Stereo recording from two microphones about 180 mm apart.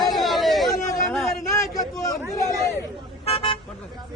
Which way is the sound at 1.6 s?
20° left (ahead or behind).